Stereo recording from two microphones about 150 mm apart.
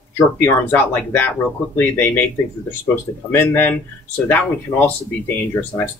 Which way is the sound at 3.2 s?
15° left (ahead or behind).